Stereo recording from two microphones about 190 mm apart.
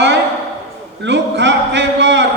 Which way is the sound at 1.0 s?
70° right (ahead or behind).